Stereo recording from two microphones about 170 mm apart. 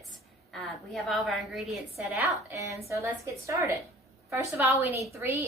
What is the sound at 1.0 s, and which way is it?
Speech, centre (ahead or behind).